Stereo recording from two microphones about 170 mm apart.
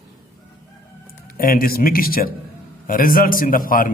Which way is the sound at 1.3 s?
60° left (ahead or behind).